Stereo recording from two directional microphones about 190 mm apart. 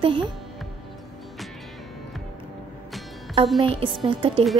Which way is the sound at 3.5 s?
30° right (ahead or behind).